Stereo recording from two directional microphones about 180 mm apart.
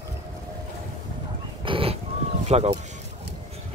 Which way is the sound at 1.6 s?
30° right (ahead or behind).